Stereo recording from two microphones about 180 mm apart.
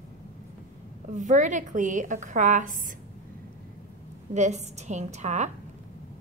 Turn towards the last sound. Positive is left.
turn(degrees=-40)  # may be behind; listen again after turning